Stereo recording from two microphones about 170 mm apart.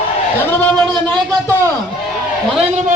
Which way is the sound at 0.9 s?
20° right (ahead or behind).